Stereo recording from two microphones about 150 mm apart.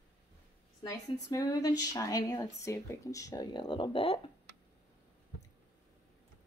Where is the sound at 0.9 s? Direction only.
25° left (ahead or behind).